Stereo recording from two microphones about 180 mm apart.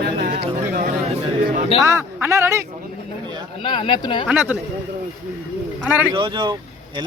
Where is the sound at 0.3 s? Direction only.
40° right (ahead or behind).